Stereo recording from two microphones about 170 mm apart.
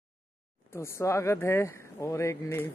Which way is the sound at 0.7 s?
15° left (ahead or behind).